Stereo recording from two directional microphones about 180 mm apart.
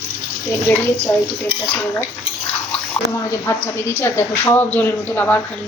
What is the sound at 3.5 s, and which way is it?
A woman's voice, 15° left (ahead or behind).